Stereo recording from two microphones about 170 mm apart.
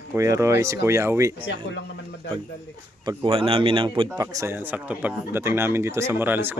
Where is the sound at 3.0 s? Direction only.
30° right (ahead or behind).